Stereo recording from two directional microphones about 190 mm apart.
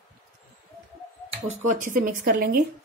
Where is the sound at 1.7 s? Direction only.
40° right (ahead or behind).